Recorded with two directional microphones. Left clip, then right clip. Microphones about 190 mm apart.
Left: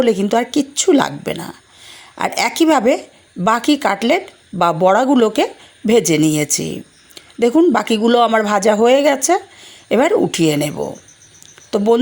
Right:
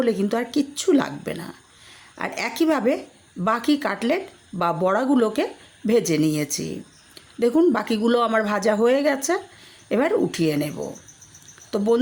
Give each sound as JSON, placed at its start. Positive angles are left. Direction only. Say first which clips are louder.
{"t": 0.0, "sound": "speech", "louder": "left 8 dB", "side_deg": 20}